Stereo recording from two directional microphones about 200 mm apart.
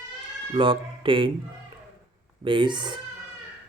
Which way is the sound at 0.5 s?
25° right (ahead or behind).